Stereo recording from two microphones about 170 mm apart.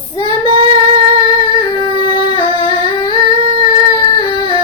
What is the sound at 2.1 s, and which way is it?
Singing, 30° left (ahead or behind).